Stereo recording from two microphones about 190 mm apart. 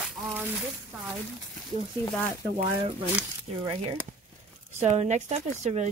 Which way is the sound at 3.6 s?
25° right (ahead or behind).